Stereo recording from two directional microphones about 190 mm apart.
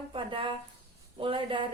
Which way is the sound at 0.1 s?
25° right (ahead or behind).